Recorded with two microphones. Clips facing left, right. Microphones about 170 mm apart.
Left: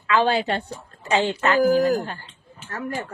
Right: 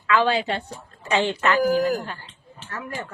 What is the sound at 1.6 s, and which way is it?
Speech, 45° left (ahead or behind).